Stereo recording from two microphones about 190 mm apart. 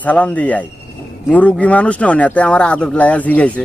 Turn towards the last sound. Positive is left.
turn(degrees=5)  # may be behind; listen again after turning